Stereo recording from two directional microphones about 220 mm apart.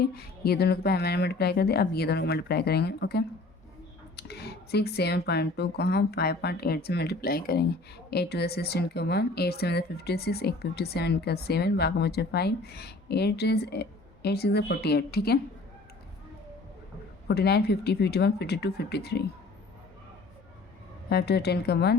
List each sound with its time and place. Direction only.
0.0 s speech: 45° left (ahead or behind)
17.2 s speech: 45° left (ahead or behind)
21.1 s speech: 50° left (ahead or behind)